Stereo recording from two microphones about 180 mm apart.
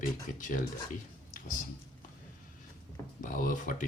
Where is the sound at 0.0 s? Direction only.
45° left (ahead or behind).